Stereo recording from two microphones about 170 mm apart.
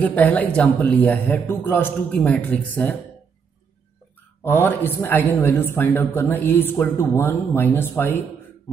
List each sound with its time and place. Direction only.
0.0 s speech: 10° left (ahead or behind)
4.4 s speech: 10° left (ahead or behind)